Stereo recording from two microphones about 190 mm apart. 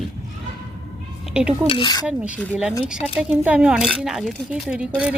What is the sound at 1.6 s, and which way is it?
Speech, 25° left (ahead or behind).